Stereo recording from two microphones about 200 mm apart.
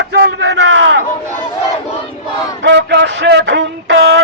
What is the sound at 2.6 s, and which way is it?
Music, 60° right (ahead or behind).